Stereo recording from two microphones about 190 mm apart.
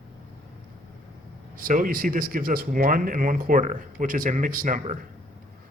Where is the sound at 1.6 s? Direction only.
45° right (ahead or behind).